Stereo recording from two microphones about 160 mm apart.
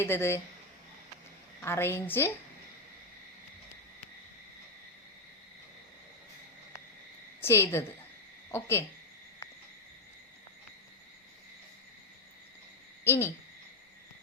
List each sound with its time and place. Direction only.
0.0 s a woman's voice: 15° left (ahead or behind)
1.6 s a woman's voice: 15° left (ahead or behind)
7.4 s a woman's voice: 15° left (ahead or behind)
13.1 s a woman's voice: 15° left (ahead or behind)